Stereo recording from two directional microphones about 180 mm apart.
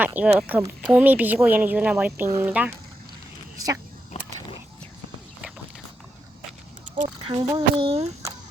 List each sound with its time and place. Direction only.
0.0 s speech: 10° right (ahead or behind)
7.3 s speech: 30° right (ahead or behind)